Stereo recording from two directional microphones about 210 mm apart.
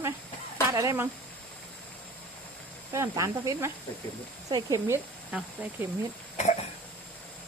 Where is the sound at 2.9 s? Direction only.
15° right (ahead or behind).